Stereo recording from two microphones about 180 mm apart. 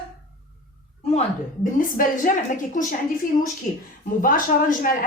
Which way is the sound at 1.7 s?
50° left (ahead or behind).